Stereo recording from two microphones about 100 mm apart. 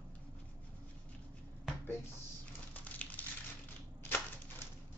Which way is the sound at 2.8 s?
15° left (ahead or behind).